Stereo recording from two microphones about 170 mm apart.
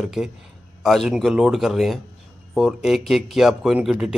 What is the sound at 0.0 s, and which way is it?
Speech, centre (ahead or behind).